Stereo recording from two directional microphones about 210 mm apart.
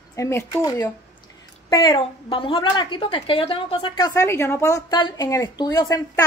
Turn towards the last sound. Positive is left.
turn(degrees=15)  # may be behind; listen again after turning